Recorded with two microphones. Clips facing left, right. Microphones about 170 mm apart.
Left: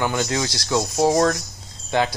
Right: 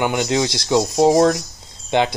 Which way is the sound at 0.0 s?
15° right (ahead or behind).